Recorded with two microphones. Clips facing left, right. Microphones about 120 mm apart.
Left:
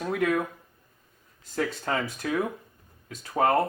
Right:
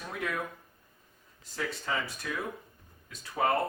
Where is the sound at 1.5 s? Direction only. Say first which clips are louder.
Left 6 dB; 55° left (ahead or behind).